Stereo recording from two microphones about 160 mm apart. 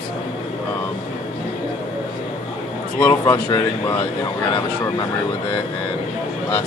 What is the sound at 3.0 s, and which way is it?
Speech, 15° left (ahead or behind).